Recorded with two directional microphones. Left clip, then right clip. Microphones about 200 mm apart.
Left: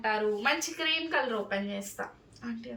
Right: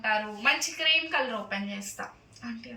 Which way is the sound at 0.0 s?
15° left (ahead or behind).